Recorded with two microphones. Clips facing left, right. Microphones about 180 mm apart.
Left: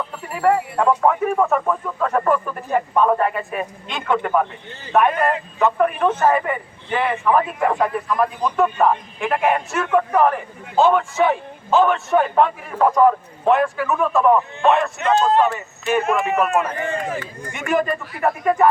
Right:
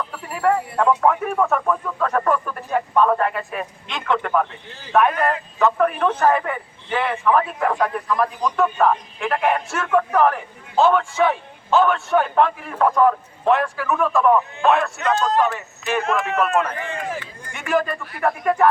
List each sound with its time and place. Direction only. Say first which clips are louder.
0.4 s a man's voice: left 1 dB; 5° left (ahead or behind)
15.0 s speech: left 5 dB; 20° left (ahead or behind)
15.5 s speech: left 3 dB; 10° left (ahead or behind)
17.7 s a man's voice: left 1 dB; centre (ahead or behind)